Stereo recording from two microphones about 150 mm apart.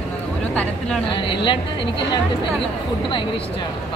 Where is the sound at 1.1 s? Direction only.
35° left (ahead or behind).